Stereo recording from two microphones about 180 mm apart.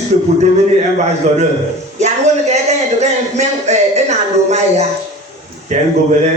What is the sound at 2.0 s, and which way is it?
A man's voice, 40° right (ahead or behind).